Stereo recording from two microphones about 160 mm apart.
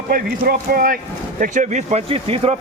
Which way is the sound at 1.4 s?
50° right (ahead or behind).